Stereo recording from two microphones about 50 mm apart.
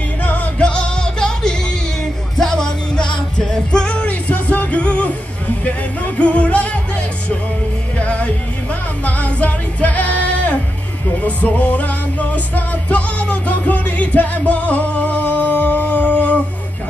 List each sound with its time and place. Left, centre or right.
0.2 s music: left
0.6 s music: centre